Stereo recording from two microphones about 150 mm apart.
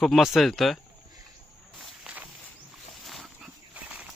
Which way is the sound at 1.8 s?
10° right (ahead or behind).